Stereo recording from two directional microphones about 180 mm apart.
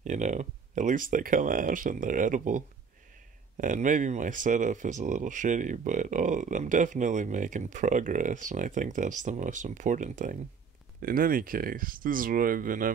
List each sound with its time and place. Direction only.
0.0 s speech: 40° right (ahead or behind)